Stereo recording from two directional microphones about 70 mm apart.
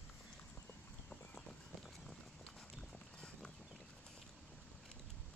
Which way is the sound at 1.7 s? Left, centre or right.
Centre.